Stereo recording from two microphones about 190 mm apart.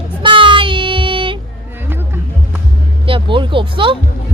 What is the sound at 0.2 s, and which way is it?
Child singing, 25° right (ahead or behind).